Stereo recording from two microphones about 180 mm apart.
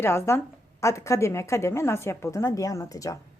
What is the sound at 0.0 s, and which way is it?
A woman's voice, 15° left (ahead or behind).